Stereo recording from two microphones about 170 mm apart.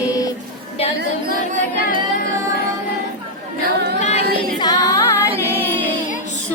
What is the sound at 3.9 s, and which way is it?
A capella, 40° left (ahead or behind).